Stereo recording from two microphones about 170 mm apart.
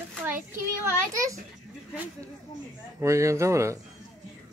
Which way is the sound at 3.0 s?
15° right (ahead or behind).